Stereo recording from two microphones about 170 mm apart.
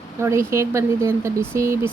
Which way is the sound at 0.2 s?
15° right (ahead or behind).